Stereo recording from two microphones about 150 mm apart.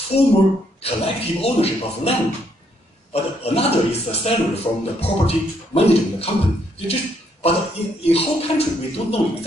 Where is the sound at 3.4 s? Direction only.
45° left (ahead or behind).